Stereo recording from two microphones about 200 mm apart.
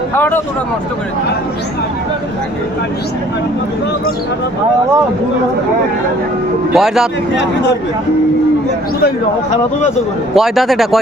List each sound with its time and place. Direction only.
0.2 s speech: 10° left (ahead or behind)
6.7 s a man's voice: centre (ahead or behind)
10.3 s a man's voice: centre (ahead or behind)